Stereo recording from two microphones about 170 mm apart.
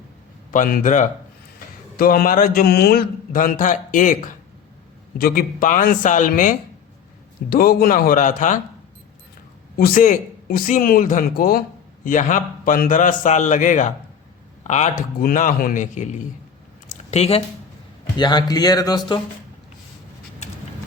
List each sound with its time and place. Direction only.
0.5 s a man's voice: 50° left (ahead or behind)
9.7 s a man's voice: 60° left (ahead or behind); by 17.4 s 35° left (ahead or behind)
18.2 s speech: 25° left (ahead or behind)
20.4 s a sound: 45° left (ahead or behind)